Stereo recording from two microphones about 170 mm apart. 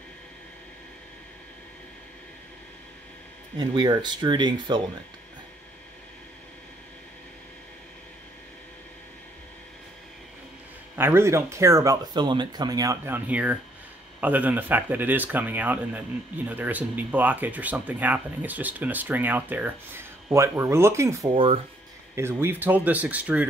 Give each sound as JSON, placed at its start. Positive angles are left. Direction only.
{"t": 3.5, "sound": "speech", "side_deg": -25}
{"t": 11.0, "sound": "speech", "side_deg": -15}
{"t": 21.3, "sound": "speech", "side_deg": -35}
{"t": 22.1, "sound": "speech", "side_deg": -15}